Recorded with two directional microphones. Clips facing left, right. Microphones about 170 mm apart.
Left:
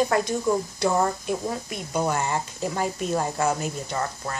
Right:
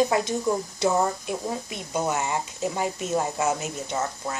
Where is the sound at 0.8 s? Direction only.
5° right (ahead or behind).